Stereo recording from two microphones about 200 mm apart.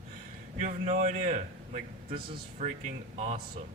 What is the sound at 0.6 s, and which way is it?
A man's voice, 40° right (ahead or behind).